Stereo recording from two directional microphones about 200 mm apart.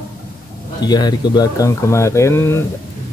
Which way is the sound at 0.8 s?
20° left (ahead or behind).